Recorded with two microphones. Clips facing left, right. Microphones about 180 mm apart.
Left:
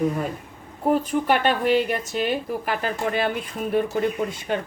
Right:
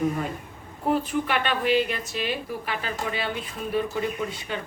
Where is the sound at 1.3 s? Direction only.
45° left (ahead or behind).